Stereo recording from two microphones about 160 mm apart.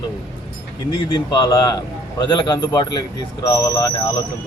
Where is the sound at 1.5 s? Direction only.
20° left (ahead or behind).